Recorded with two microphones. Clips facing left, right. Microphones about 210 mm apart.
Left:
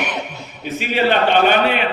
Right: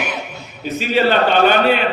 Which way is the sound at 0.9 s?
40° right (ahead or behind).